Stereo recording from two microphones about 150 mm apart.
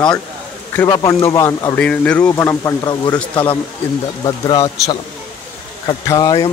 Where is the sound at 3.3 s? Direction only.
35° left (ahead or behind).